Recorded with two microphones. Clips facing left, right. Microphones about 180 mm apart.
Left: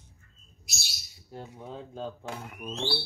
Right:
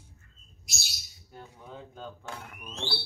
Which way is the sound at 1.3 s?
25° left (ahead or behind).